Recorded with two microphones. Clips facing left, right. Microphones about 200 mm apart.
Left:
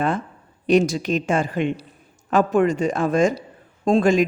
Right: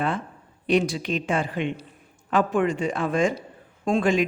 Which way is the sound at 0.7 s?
45° left (ahead or behind).